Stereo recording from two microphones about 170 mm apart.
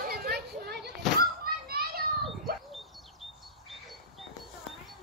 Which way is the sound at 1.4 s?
65° right (ahead or behind).